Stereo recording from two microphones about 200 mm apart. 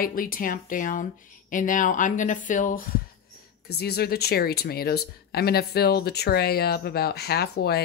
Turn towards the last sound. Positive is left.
turn(degrees=55)  # may be behind; listen again after turning